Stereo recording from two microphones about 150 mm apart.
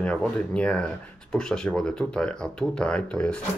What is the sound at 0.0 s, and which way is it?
Speech, 5° left (ahead or behind).